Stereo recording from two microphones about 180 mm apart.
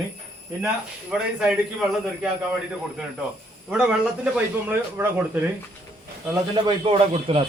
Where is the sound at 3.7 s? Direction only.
5° right (ahead or behind).